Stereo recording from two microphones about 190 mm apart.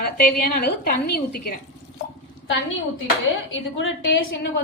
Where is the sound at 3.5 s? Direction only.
80° left.